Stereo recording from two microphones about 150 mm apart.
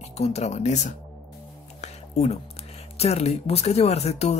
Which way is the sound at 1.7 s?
45° left (ahead or behind).